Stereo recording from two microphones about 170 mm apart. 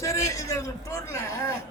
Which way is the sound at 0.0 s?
20° left (ahead or behind).